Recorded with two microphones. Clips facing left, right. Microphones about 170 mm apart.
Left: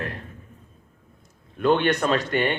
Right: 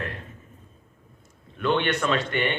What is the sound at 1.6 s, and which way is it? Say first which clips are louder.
A man's voice: left 4 dB; 40° left (ahead or behind).